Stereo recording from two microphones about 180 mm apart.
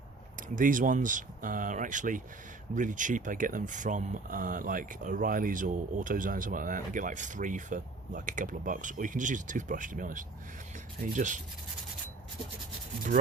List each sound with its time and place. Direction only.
0.4 s speech: 45° right (ahead or behind)